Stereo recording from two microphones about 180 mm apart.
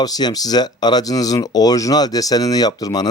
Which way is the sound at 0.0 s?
20° left (ahead or behind).